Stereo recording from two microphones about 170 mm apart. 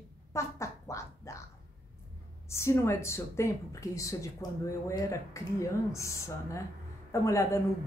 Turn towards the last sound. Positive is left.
turn(degrees=20)  # may be behind; listen again after turning